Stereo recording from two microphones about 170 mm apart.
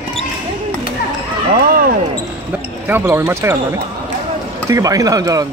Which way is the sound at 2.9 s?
15° right (ahead or behind).